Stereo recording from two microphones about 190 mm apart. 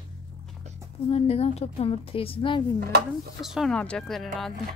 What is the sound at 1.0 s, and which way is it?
A woman's voice, 30° left (ahead or behind).